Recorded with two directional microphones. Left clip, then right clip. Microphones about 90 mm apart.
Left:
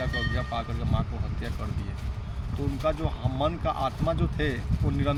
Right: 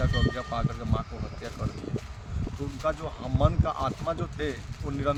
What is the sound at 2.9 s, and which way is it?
Speech, 25° right (ahead or behind).